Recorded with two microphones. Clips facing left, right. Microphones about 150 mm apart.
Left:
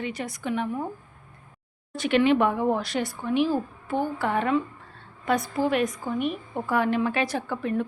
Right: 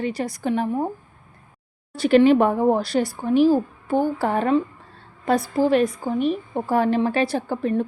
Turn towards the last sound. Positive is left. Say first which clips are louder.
# right 4 dB
turn(degrees=-35)  # may be behind; listen again after turning